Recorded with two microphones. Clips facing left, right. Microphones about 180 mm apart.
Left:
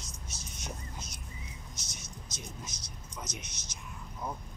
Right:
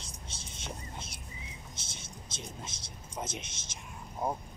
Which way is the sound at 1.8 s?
30° right (ahead or behind).